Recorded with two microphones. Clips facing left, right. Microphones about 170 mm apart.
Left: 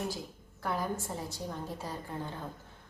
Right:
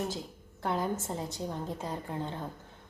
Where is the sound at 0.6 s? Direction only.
20° right (ahead or behind).